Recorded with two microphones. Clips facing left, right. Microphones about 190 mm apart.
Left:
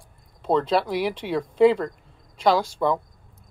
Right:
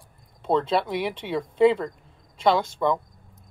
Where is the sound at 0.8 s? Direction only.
25° right (ahead or behind).